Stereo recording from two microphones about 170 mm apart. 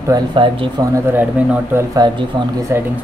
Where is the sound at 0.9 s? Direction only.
10° right (ahead or behind).